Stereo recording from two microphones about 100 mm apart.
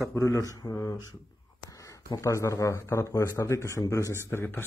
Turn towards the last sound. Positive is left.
turn(degrees=20)  # may be behind; listen again after turning